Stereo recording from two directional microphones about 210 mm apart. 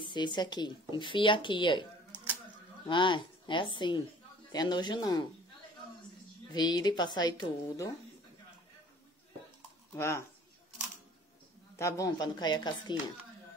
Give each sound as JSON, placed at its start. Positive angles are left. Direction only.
{"t": 0.0, "sound": "speech", "side_deg": 20}
{"t": 2.9, "sound": "speech", "side_deg": 20}
{"t": 6.5, "sound": "speech", "side_deg": 20}
{"t": 9.9, "sound": "speech", "side_deg": 10}
{"t": 11.8, "sound": "speech", "side_deg": 15}